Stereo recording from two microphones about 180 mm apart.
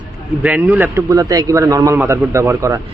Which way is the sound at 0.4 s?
10° right (ahead or behind).